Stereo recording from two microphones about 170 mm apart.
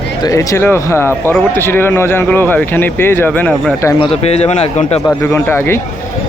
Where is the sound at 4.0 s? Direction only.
40° left (ahead or behind).